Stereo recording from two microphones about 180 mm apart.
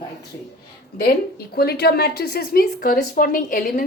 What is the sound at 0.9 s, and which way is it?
A woman's voice, 60° left (ahead or behind).